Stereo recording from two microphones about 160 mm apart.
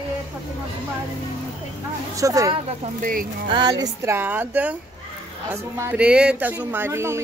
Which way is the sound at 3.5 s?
30° right (ahead or behind).